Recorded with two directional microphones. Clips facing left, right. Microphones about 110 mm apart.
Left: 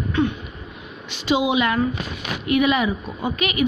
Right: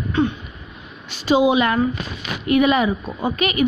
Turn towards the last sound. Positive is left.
turn(degrees=-40)  # may be behind; listen again after turning